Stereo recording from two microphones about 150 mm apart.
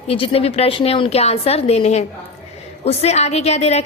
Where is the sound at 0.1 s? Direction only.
40° left (ahead or behind).